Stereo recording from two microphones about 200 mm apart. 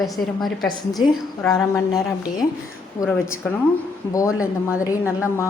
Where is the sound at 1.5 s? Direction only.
15° left (ahead or behind).